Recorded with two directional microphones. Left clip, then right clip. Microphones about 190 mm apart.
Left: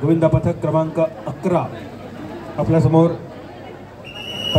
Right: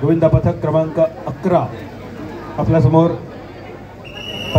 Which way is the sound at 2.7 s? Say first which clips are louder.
Right 2 dB; 15° left (ahead or behind).